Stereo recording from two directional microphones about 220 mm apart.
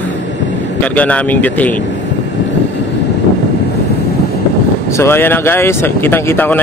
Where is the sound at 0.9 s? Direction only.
5° left (ahead or behind).